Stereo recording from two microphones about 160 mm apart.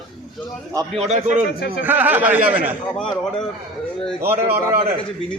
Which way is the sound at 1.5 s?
85° left.